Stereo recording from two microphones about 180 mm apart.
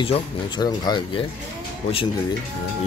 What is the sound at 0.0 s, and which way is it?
Speech, 25° left (ahead or behind).